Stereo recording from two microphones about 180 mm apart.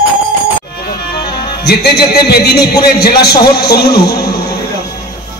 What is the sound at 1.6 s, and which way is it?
A man's voice, 60° left (ahead or behind).